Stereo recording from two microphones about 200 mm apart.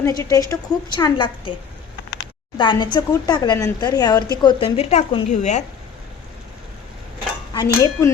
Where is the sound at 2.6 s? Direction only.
25° left (ahead or behind).